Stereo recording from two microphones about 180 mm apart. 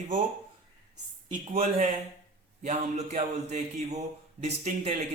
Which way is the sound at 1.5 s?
35° right (ahead or behind).